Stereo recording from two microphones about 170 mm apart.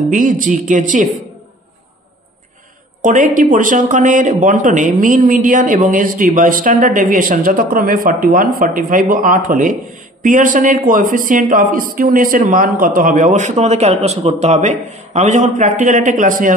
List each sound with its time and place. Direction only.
0.1 s speech: 50° right (ahead or behind)
3.0 s speech: 50° right (ahead or behind)